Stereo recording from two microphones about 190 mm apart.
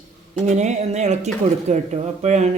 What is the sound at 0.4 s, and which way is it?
Speech, 35° right (ahead or behind).